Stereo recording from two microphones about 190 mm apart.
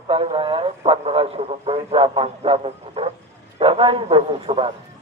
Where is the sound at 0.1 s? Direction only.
30° right (ahead or behind).